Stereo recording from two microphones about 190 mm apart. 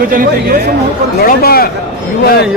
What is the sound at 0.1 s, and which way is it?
Speech, 55° right (ahead or behind).